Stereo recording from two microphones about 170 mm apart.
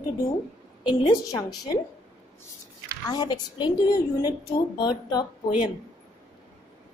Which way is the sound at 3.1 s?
25° left (ahead or behind).